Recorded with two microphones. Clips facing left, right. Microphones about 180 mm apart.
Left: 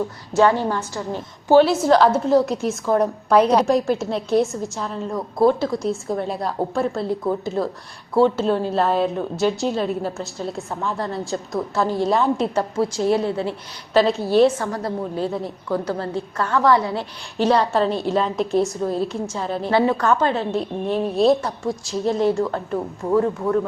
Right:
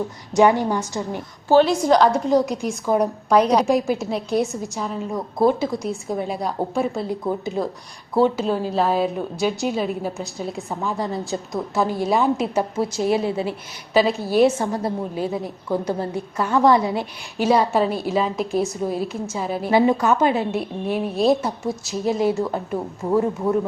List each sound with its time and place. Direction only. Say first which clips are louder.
0.3 s a woman's voice: right 1 dB; 15° right (ahead or behind)
1.5 s a woman's voice: left 1 dB; 10° left (ahead or behind)
5.1 s speech: left 2 dB; 20° right (ahead or behind)
5.5 s a woman's voice: left 2 dB; centre (ahead or behind)
10.9 s a woman's voice: even; centre (ahead or behind)
11.7 s a woman's voice: right 1 dB; 15° right (ahead or behind)
11.9 s a woman's voice: left 1 dB; 5° right (ahead or behind)
13.0 s a woman's voice: even; 15° right (ahead or behind)